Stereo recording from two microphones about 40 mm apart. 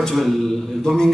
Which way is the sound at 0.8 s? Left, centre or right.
Centre.